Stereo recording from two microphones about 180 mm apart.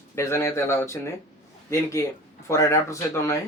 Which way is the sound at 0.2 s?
15° left (ahead or behind).